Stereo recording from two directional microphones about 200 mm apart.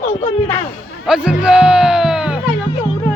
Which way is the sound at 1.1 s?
5° right (ahead or behind).